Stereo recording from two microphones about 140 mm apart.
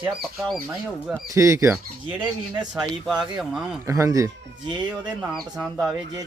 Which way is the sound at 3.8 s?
20° right (ahead or behind).